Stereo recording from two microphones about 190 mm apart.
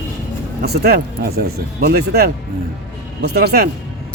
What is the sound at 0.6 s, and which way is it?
Speech, 55° right (ahead or behind).